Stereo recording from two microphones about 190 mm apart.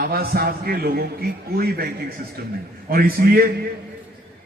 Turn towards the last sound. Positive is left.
turn(degrees=-50)  # may be behind; listen again after turning